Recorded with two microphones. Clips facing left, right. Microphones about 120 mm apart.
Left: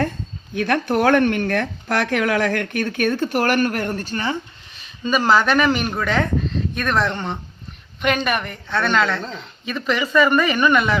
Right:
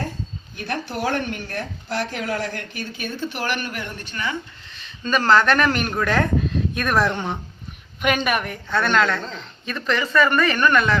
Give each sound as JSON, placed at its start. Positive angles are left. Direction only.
{"t": 0.5, "sound": "speech", "side_deg": 65}
{"t": 5.0, "sound": "speech", "side_deg": 5}